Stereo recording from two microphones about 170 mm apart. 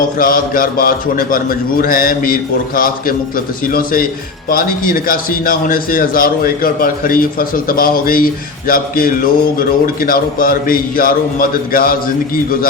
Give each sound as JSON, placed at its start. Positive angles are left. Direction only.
{"t": 0.2, "sound": "a man's voice", "side_deg": 55}